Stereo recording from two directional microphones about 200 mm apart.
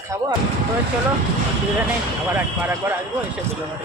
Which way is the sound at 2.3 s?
10° right (ahead or behind).